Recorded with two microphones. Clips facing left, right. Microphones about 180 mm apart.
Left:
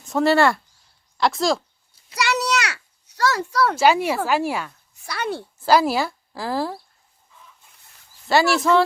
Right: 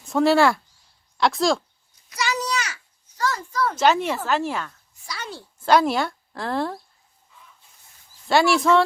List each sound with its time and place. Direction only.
0.1 s speech: centre (ahead or behind)
2.1 s a sound: 75° left (ahead or behind)
3.8 s speech: 10° left (ahead or behind)
5.0 s speech: 60° left (ahead or behind)
5.5 s speech: 5° left (ahead or behind)
8.3 s speech: centre (ahead or behind)